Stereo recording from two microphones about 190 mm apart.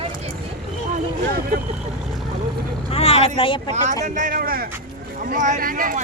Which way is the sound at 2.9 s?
30° left (ahead or behind).